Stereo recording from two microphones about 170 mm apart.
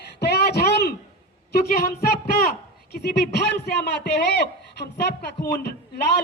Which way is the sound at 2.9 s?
75° left (ahead or behind).